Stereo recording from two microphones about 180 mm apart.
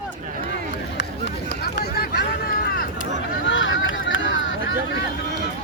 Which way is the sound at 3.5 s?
90° left.